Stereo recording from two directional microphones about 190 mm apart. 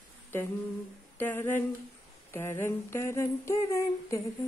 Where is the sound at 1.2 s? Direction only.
10° left (ahead or behind).